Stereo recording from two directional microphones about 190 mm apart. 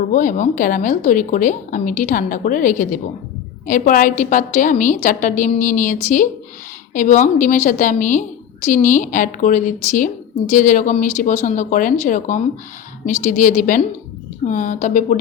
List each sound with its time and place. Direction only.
0.1 s a woman's voice: 45° left (ahead or behind)